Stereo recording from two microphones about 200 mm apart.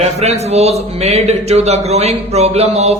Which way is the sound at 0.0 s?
35° right (ahead or behind).